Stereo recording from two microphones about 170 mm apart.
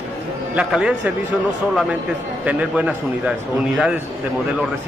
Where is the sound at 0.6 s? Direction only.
5° right (ahead or behind).